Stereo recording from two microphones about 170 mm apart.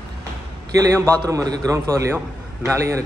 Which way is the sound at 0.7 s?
15° right (ahead or behind).